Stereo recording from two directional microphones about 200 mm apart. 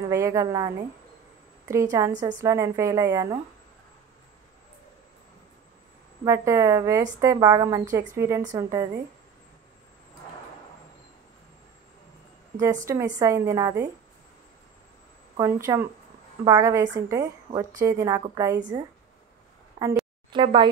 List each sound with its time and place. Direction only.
0.1 s a woman's voice: 15° right (ahead or behind)
6.2 s a woman's voice: 15° right (ahead or behind)
12.5 s a woman's voice: 15° right (ahead or behind)
15.3 s a woman's voice: 15° right (ahead or behind)
19.8 s a woman's voice: 20° right (ahead or behind)